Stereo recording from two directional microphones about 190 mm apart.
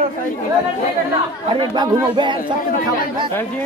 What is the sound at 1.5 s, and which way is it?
Speech, 25° right (ahead or behind).